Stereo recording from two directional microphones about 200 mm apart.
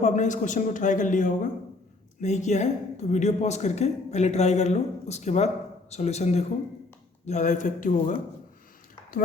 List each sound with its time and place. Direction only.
0.0 s speech: 35° left (ahead or behind)